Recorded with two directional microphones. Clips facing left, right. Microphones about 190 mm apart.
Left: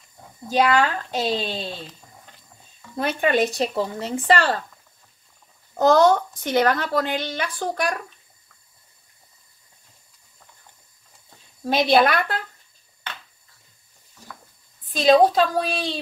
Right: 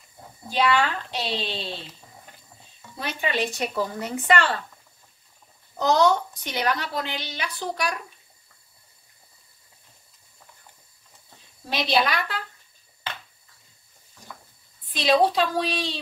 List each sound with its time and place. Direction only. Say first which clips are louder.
0.5 s a woman's voice: left 3 dB; 45° left (ahead or behind)
3.0 s a woman's voice: left 7 dB; 50° left (ahead or behind)
3.5 s a woman's voice: left 3 dB; 25° left (ahead or behind)
5.8 s a woman's voice: left 4 dB; 50° left (ahead or behind)
11.6 s a woman's voice: left 6 dB; 50° left (ahead or behind)
14.9 s a woman's voice: left 5 dB; 45° left (ahead or behind)